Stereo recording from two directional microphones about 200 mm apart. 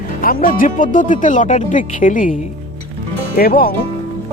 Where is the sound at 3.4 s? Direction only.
45° left (ahead or behind).